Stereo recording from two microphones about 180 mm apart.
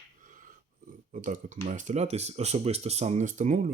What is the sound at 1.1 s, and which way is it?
Speech, 45° right (ahead or behind).